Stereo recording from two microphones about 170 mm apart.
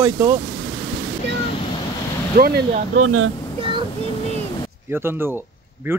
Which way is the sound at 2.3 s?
55° right (ahead or behind).